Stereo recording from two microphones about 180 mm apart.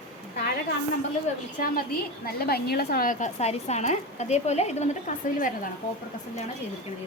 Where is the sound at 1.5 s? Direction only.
50° left (ahead or behind).